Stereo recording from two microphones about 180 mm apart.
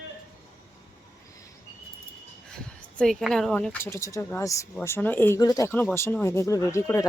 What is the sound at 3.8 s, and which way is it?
Speech, 15° left (ahead or behind).